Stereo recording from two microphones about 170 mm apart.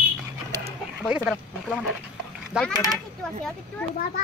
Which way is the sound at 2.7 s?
20° right (ahead or behind).